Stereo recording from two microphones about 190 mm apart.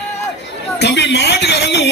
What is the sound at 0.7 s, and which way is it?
Speech, 65° left (ahead or behind).